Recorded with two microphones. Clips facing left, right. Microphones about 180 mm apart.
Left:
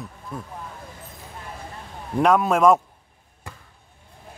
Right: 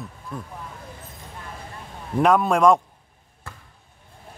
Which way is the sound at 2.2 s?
Centre (ahead or behind).